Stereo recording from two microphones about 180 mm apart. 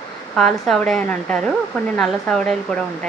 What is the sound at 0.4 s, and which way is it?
Speech, 5° left (ahead or behind).